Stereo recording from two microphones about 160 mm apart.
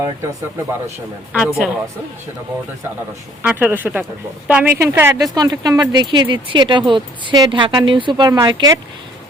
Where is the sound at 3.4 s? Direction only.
10° right (ahead or behind).